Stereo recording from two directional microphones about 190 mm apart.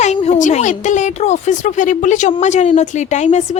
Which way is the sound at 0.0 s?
35° left (ahead or behind).